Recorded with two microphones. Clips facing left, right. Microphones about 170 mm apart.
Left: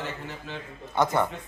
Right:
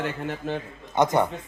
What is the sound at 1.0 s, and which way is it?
Speech, 20° right (ahead or behind).